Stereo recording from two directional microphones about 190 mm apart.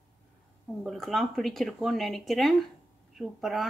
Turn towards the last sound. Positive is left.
turn(degrees=0)  # may be behind; listen again after turning